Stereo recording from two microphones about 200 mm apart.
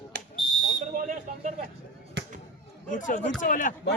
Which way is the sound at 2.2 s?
60° right (ahead or behind).